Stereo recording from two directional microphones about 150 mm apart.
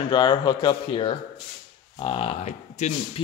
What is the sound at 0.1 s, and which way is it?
A man's voice, 30° left (ahead or behind).